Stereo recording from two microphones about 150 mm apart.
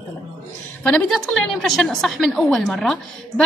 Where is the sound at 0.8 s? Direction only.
5° left (ahead or behind).